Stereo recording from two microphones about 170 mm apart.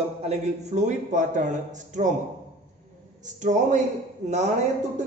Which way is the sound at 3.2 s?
45° right (ahead or behind).